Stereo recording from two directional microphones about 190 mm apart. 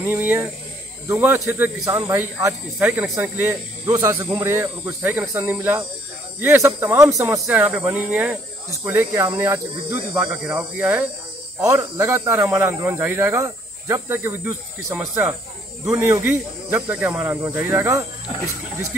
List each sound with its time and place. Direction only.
0.0 s speech: 10° right (ahead or behind)
3.8 s speech: 20° right (ahead or behind)